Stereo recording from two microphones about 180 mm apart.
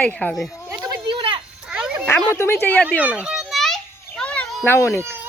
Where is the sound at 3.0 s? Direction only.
5° right (ahead or behind); by 5.0 s 15° left (ahead or behind).